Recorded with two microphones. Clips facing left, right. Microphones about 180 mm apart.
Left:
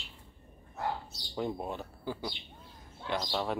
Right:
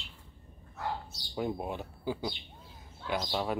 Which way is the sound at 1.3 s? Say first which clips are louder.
Right 1 dB; 5° right (ahead or behind).